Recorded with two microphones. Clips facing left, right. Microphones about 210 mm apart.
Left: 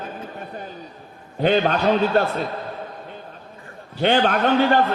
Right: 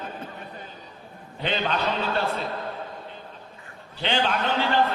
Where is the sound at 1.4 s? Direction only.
45° left (ahead or behind).